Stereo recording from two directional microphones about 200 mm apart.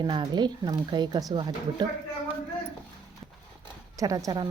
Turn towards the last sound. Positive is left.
turn(degrees=-20)  # may be behind; listen again after turning